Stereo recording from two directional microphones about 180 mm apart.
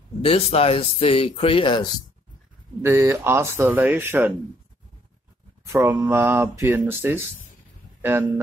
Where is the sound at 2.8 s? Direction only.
15° right (ahead or behind).